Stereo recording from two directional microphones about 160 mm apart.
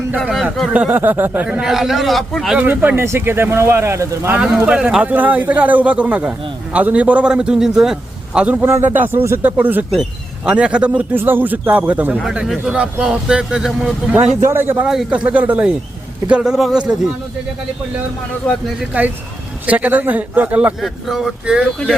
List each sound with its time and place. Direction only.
0.2 s speech: centre (ahead or behind); by 4.4 s 15° right (ahead or behind)
4.4 s speech: 5° right (ahead or behind)
18.8 s speech: 10° right (ahead or behind)